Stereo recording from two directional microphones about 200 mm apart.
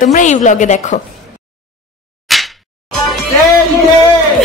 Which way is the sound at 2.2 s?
Centre (ahead or behind).